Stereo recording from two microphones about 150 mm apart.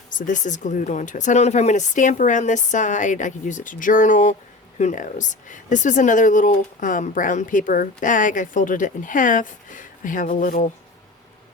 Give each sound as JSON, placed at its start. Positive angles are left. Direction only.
{"t": 0.1, "sound": "speech", "side_deg": 60}